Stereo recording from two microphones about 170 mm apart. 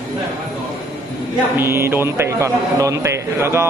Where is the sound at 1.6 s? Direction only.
15° right (ahead or behind).